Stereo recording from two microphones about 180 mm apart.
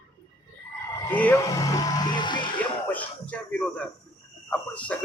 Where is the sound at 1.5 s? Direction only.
20° left (ahead or behind).